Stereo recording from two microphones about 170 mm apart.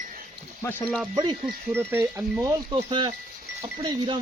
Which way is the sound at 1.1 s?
25° right (ahead or behind).